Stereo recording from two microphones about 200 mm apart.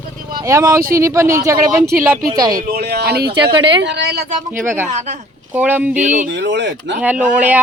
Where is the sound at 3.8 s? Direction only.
60° right (ahead or behind).